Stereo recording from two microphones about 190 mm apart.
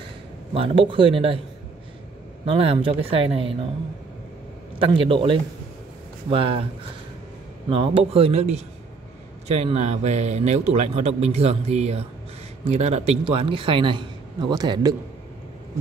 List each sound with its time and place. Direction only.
0.6 s a man's voice: 25° right (ahead or behind)
2.4 s a man's voice: 30° right (ahead or behind)
4.7 s a man's voice: 30° right (ahead or behind)
7.7 s a man's voice: 30° right (ahead or behind)